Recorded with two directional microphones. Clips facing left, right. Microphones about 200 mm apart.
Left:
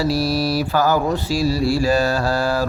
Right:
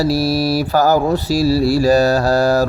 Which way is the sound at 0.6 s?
40° right (ahead or behind).